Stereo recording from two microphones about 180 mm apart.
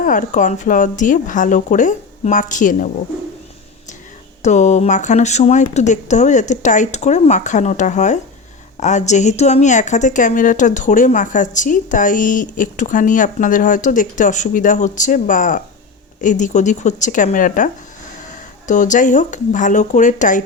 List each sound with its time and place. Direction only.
0.0 s a woman's voice: 45° left (ahead or behind)
4.4 s a woman's voice: 40° left (ahead or behind)
18.7 s a woman's voice: 45° left (ahead or behind)